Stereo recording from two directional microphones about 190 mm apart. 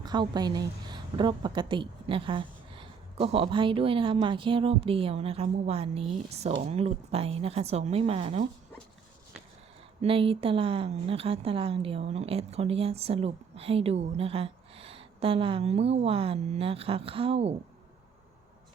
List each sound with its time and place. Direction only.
0.0 s a woman's voice: 20° right (ahead or behind)
10.0 s a woman's voice: 30° right (ahead or behind)